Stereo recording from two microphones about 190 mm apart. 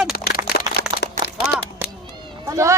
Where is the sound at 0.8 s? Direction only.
60° right (ahead or behind).